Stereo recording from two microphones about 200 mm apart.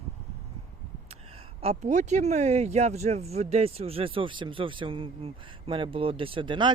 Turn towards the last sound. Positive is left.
turn(degrees=-25)  # may be behind; listen again after turning